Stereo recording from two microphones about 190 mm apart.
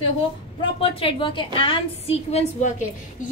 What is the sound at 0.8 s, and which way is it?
A woman's voice, 30° left (ahead or behind).